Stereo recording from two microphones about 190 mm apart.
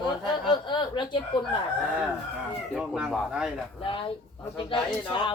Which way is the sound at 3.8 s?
25° left (ahead or behind).